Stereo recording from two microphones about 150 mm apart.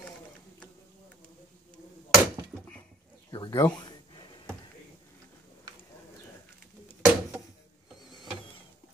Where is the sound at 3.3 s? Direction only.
30° left (ahead or behind).